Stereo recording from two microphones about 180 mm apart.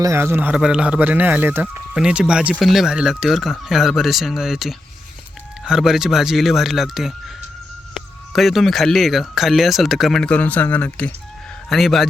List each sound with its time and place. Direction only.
0.0 s speech: 15° right (ahead or behind)
8.3 s speech: centre (ahead or behind)